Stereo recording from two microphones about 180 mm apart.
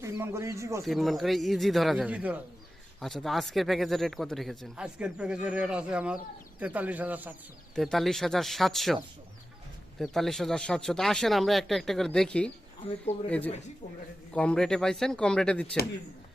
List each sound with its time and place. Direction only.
0.0 s speech: 15° right (ahead or behind)
0.9 s speech: centre (ahead or behind)
10.0 s speech: centre (ahead or behind)
14.3 s speech: 5° left (ahead or behind)